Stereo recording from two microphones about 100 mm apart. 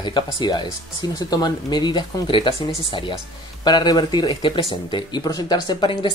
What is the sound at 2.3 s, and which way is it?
Speech, 60° left (ahead or behind).